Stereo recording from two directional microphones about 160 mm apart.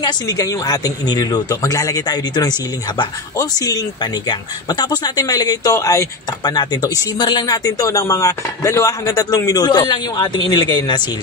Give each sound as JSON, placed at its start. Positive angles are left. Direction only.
{"t": 0.0, "sound": "speech", "side_deg": 25}